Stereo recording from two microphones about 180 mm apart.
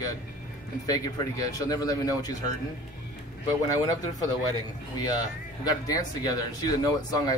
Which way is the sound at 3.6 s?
20° left (ahead or behind).